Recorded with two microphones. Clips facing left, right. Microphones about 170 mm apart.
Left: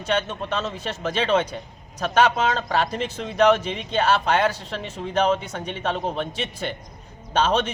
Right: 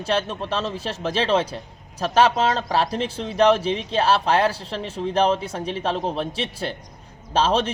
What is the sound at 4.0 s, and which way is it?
Speech, 30° right (ahead or behind).